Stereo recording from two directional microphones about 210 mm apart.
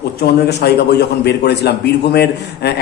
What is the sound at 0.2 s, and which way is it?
Speech, 50° left (ahead or behind).